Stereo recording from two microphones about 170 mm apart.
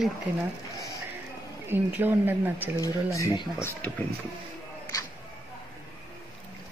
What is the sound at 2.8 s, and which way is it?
Speech, 20° left (ahead or behind).